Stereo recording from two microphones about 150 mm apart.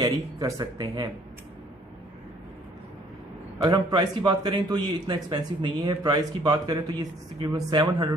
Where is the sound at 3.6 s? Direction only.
30° right (ahead or behind).